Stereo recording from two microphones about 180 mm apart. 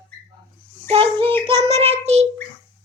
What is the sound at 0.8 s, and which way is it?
Child singing, 30° right (ahead or behind).